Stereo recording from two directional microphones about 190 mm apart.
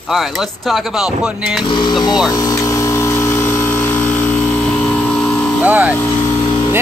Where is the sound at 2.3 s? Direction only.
20° left (ahead or behind).